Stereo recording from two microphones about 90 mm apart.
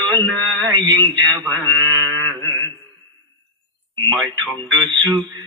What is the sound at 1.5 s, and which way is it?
Mantra, 60° right (ahead or behind).